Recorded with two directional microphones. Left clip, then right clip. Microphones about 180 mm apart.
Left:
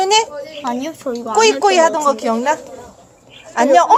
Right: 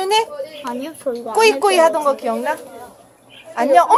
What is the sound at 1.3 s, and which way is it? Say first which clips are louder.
Speech: left 2 dB; 10° left (ahead or behind).